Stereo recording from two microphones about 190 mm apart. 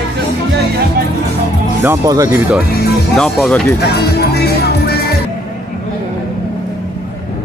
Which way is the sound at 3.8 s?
60° left (ahead or behind).